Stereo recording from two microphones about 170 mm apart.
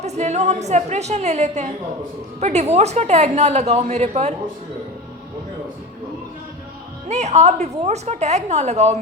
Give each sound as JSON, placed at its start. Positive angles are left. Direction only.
{"t": 0.0, "sound": "a woman's voice", "side_deg": -40}
{"t": 7.1, "sound": "a woman's voice", "side_deg": -40}